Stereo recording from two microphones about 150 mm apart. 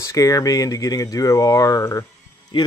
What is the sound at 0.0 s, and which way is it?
Speech, 20° left (ahead or behind).